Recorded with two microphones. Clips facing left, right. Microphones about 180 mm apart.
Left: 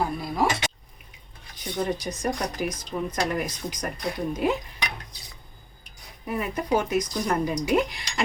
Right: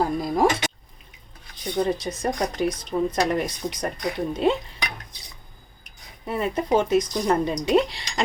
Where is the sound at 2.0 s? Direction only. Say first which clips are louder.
Right 3 dB; 30° right (ahead or behind).